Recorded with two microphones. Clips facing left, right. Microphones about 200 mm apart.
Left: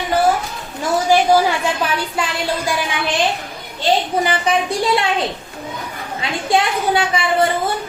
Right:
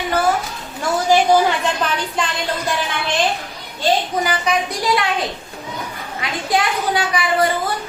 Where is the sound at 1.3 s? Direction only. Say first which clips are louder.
Even; 10° left (ahead or behind).